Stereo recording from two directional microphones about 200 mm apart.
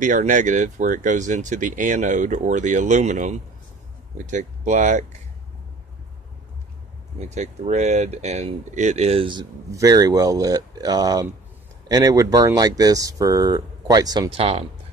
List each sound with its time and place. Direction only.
0.0 s speech: 40° right (ahead or behind)
7.2 s speech: 35° right (ahead or behind)